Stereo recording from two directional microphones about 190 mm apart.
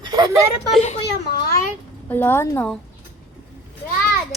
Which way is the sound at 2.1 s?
10° left (ahead or behind).